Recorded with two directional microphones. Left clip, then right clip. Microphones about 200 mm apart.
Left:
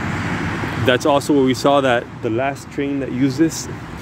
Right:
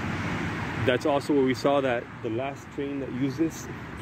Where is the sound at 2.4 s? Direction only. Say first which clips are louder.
Left 12 dB; 20° left (ahead or behind).